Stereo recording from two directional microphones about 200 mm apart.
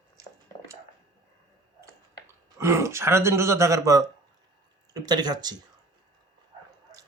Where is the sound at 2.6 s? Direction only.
15° right (ahead or behind).